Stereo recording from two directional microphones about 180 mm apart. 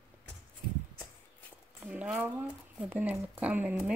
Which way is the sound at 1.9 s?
10° right (ahead or behind).